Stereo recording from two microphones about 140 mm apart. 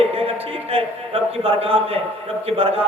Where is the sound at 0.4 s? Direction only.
40° right (ahead or behind).